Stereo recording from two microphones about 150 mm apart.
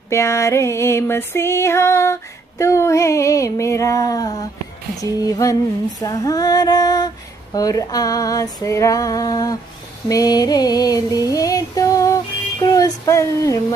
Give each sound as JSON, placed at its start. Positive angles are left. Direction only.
{"t": 0.1, "sound": "music", "side_deg": 20}
{"t": 10.0, "sound": "female singing", "side_deg": 25}
{"t": 12.6, "sound": "music", "side_deg": 25}